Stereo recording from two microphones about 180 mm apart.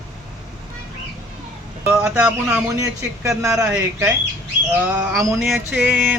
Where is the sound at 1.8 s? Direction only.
5° right (ahead or behind).